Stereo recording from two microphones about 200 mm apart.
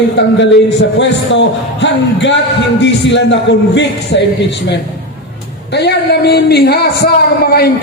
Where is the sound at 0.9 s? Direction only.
65° left (ahead or behind).